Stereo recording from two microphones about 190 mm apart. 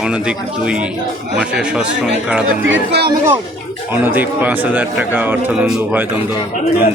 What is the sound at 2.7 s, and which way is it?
Speech, 60° right (ahead or behind).